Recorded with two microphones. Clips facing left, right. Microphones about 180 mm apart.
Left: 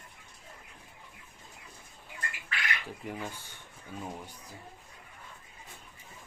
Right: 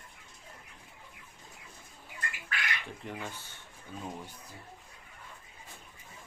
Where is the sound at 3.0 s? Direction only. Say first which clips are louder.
Left 3 dB; 10° left (ahead or behind).